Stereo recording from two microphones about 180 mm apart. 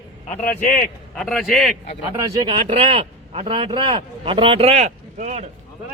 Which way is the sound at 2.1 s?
25° right (ahead or behind).